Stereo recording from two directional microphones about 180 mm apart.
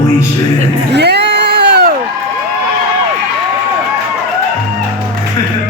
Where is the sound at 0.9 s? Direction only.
70° right (ahead or behind).